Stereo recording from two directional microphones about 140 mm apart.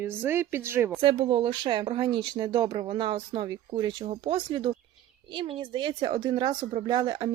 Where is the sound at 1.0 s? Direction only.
40° right (ahead or behind).